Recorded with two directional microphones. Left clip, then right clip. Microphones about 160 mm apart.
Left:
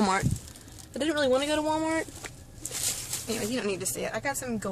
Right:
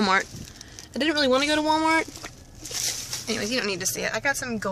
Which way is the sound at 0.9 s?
15° right (ahead or behind).